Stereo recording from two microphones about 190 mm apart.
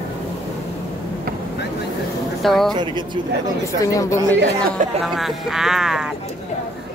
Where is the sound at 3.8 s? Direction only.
15° left (ahead or behind).